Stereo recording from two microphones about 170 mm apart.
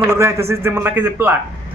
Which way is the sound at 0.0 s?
15° right (ahead or behind).